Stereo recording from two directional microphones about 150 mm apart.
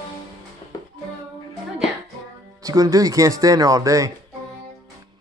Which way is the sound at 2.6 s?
25° right (ahead or behind).